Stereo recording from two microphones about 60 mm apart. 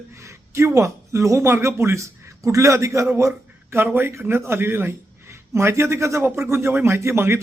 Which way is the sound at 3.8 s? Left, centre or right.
Right.